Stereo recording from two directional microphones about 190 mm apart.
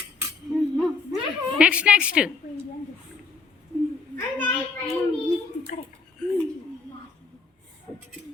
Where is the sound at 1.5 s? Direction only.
5° right (ahead or behind).